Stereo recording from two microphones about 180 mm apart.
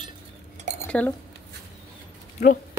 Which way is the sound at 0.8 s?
10° left (ahead or behind).